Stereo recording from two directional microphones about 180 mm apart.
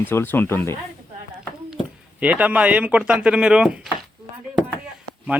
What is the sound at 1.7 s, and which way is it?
Speech, 5° right (ahead or behind).